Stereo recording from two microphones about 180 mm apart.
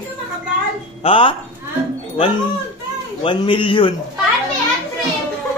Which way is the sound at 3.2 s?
30° left (ahead or behind).